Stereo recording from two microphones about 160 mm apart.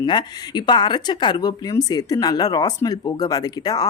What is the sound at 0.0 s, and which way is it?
Speech, 25° left (ahead or behind).